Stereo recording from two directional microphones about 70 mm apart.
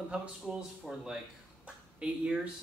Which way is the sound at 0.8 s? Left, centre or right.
Centre.